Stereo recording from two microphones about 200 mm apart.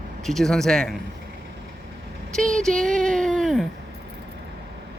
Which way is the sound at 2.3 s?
5° left (ahead or behind).